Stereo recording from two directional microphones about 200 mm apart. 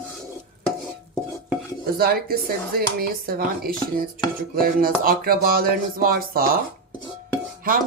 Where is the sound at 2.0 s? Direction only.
50° right (ahead or behind).